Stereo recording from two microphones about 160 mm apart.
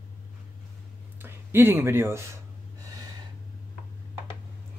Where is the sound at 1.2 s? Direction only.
15° right (ahead or behind).